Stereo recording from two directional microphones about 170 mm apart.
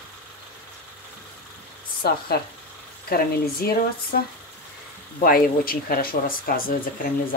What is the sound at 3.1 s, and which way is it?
Speech, 60° left (ahead or behind).